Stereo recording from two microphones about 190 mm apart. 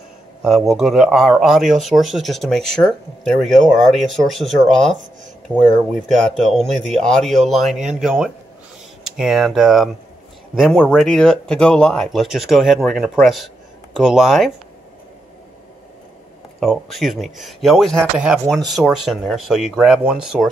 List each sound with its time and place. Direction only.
0.4 s speech: centre (ahead or behind)
16.5 s speech: centre (ahead or behind)